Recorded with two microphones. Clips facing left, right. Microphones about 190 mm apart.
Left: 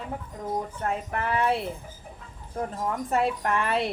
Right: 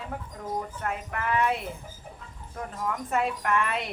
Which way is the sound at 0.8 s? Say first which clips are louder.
Left 3 dB; 35° left (ahead or behind).